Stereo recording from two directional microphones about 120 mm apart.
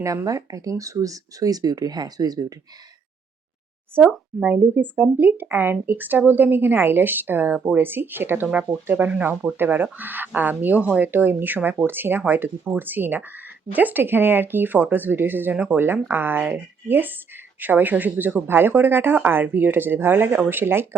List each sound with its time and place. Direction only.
0.0 s speech: 25° right (ahead or behind)
3.9 s speech: 15° right (ahead or behind)